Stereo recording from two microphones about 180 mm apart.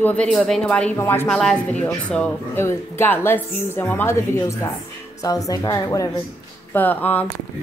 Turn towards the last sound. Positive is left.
turn(degrees=10)  # may be behind; listen again after turning